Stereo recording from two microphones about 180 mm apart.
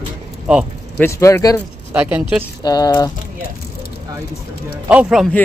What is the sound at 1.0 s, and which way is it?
Speech, 15° left (ahead or behind).